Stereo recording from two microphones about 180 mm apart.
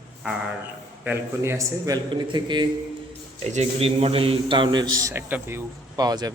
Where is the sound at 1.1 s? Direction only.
15° right (ahead or behind).